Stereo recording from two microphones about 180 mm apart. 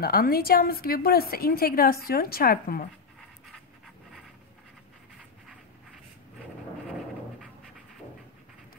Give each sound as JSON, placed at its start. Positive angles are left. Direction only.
{"t": 0.0, "sound": "a woman's voice", "side_deg": 55}
{"t": 3.5, "sound": "pant", "side_deg": 0}